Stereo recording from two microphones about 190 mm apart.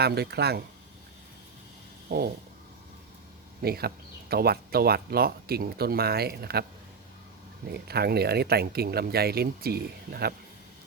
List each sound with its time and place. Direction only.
0.0 s speech: 60° right (ahead or behind)
2.0 s a sound: 55° right (ahead or behind)
3.6 s speech: 55° right (ahead or behind)
7.7 s speech: 55° right (ahead or behind)